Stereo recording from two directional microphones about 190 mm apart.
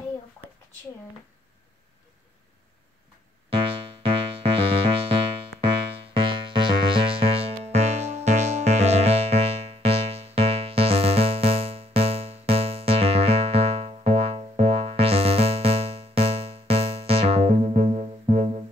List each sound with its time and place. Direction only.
4.0 s music: 30° right (ahead or behind)
6.1 s music: 25° right (ahead or behind)